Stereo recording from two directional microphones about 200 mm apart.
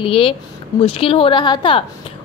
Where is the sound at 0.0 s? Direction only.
25° left (ahead or behind).